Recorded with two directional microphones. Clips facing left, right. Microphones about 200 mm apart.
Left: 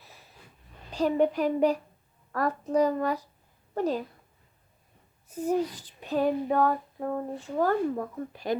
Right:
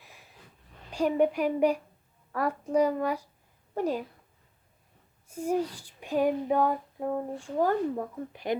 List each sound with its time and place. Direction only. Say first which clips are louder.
0.0 s a sound: left 1 dB; 15° right (ahead or behind)
0.9 s female singing: even; 10° right (ahead or behind)
5.3 s female singing: left 1 dB; 10° right (ahead or behind)
7.9 s speech: left 1 dB; 20° right (ahead or behind)